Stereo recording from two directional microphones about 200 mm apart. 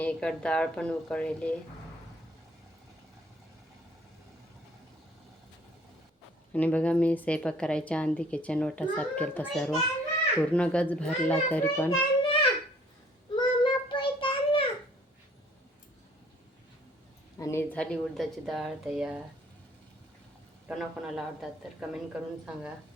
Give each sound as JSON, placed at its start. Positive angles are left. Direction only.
{"t": 0.0, "sound": "a woman's voice", "side_deg": 5}
{"t": 6.5, "sound": "a woman's voice", "side_deg": 5}
{"t": 11.9, "sound": "a sound", "side_deg": 25}
{"t": 13.3, "sound": "child singing", "side_deg": 25}
{"t": 17.3, "sound": "speech", "side_deg": 15}
{"t": 20.7, "sound": "a woman's voice", "side_deg": 0}